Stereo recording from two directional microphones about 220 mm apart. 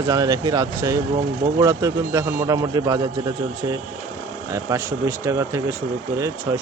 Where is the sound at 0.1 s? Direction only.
15° right (ahead or behind).